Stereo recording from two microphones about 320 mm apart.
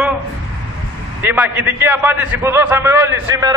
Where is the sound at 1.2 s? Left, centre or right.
Centre.